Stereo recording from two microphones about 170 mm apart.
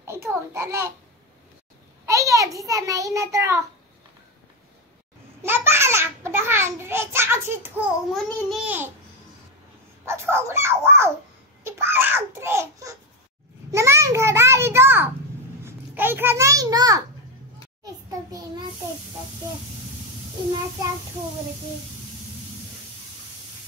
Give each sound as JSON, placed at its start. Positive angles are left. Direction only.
{"t": 0.0, "sound": "a sound", "side_deg": -15}
{"t": 0.5, "sound": "speech", "side_deg": -15}
{"t": 2.0, "sound": "a child's voice", "side_deg": -20}
{"t": 5.4, "sound": "a child's voice", "side_deg": -15}
{"t": 8.1, "sound": "a child's voice", "side_deg": 0}
{"t": 10.0, "sound": "speech", "side_deg": -15}
{"t": 13.7, "sound": "a sound", "side_deg": -15}
{"t": 15.6, "sound": "a child's voice", "side_deg": -10}